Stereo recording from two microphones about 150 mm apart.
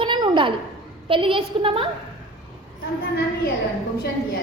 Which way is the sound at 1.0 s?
35° right (ahead or behind).